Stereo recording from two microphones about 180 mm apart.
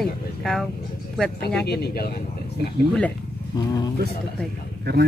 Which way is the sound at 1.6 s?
65° left (ahead or behind).